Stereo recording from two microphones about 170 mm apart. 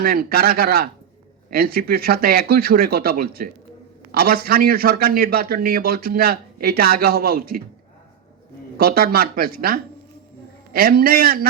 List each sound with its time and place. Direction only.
0.0 s a man's voice: 65° right (ahead or behind)
8.8 s a man's voice: 60° right (ahead or behind)